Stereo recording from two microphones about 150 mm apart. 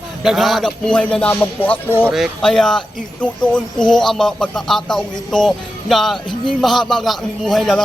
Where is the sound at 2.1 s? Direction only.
Centre (ahead or behind).